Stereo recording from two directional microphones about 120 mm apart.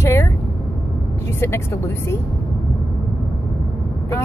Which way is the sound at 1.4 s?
20° left (ahead or behind).